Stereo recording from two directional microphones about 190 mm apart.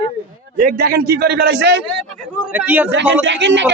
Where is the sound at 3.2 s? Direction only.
70° right (ahead or behind).